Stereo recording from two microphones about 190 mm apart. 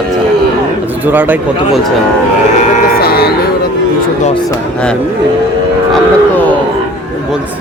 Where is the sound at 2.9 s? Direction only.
55° left (ahead or behind).